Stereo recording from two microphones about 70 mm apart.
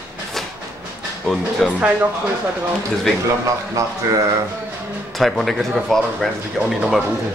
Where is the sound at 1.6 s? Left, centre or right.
Centre.